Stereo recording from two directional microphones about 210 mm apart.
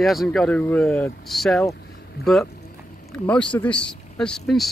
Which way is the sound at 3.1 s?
5° left (ahead or behind).